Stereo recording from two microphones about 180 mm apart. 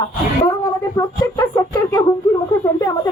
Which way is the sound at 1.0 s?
20° left (ahead or behind).